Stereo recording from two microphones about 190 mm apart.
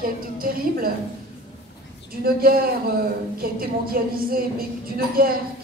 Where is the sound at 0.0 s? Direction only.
50° right (ahead or behind).